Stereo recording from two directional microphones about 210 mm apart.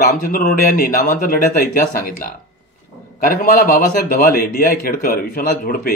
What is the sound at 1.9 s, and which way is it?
A man's voice, 45° left (ahead or behind).